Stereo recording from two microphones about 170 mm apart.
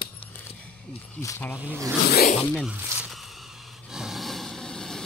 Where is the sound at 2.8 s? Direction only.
10° right (ahead or behind).